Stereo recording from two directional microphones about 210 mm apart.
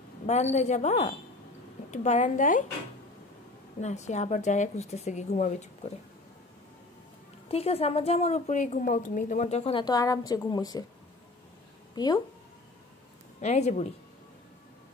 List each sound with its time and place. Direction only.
0.3 s a woman's voice: 30° left (ahead or behind)
3.8 s a woman's voice: 35° left (ahead or behind)
7.4 s a woman's voice: 30° left (ahead or behind)
11.9 s speech: 20° left (ahead or behind)
13.4 s a woman's voice: 30° left (ahead or behind)